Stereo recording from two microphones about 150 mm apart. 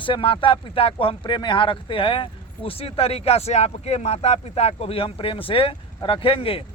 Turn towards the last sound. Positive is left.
turn(degrees=40)  # may be behind; listen again after turning